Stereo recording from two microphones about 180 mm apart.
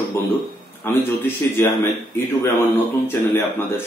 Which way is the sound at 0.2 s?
15° left (ahead or behind).